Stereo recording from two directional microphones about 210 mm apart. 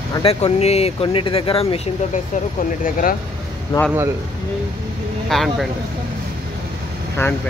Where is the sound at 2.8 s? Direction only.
40° left (ahead or behind).